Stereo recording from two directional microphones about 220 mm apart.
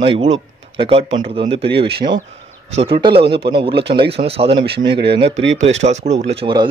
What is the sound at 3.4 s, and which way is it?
A man's voice, 25° right (ahead or behind).